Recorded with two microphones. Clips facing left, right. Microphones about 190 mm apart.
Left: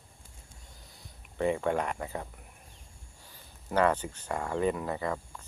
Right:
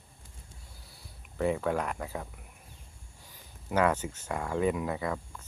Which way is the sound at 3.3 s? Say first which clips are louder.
Even; 10° right (ahead or behind).